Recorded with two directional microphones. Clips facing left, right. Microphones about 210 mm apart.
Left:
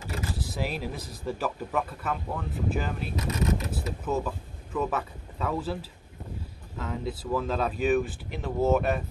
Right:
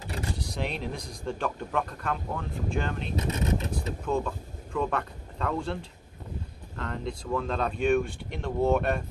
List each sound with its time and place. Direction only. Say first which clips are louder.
0.0 s vehicle: left 1 dB; 35° right (ahead or behind)
0.3 s speech: even; 5° left (ahead or behind)